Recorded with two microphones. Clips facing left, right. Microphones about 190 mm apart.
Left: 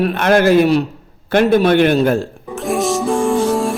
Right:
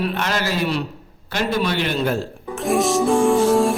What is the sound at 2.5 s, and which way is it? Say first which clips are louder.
Music: left 1 dB; centre (ahead or behind).